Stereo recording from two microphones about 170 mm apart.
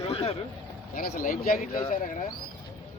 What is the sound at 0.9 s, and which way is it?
Speech, 55° left (ahead or behind).